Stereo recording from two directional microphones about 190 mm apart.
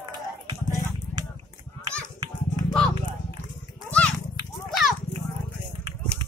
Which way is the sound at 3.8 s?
5° left (ahead or behind).